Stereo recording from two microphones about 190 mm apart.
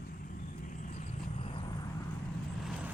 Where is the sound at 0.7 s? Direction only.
45° left (ahead or behind).